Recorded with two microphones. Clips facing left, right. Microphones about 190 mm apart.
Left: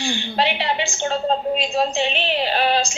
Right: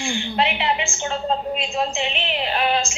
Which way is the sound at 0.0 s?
35° left (ahead or behind).